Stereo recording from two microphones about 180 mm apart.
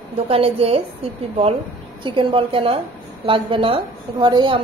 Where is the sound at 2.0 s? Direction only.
30° right (ahead or behind).